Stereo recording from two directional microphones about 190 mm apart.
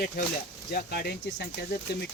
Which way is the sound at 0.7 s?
50° left (ahead or behind).